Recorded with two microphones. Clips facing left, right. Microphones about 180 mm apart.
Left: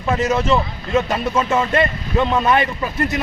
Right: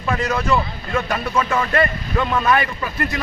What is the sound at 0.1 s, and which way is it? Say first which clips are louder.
Speech: left 3 dB; 20° left (ahead or behind).